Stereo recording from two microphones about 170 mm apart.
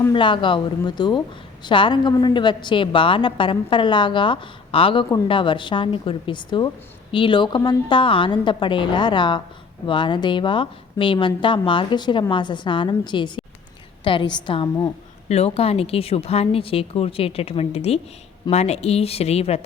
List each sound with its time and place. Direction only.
0.1 s a woman's voice: 30° left (ahead or behind)